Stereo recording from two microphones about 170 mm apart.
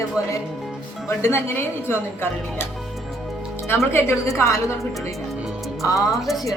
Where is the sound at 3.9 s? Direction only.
15° left (ahead or behind).